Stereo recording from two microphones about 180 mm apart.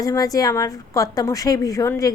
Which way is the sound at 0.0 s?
20° left (ahead or behind).